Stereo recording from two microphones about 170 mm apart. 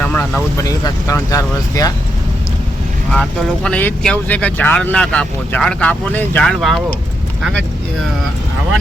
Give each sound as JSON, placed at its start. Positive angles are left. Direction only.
{"t": 0.0, "sound": "speech", "side_deg": 10}
{"t": 3.1, "sound": "speech", "side_deg": 5}